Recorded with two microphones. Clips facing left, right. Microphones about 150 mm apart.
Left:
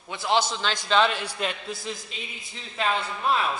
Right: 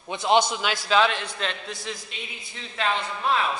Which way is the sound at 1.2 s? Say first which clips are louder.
Left 1 dB; 10° left (ahead or behind).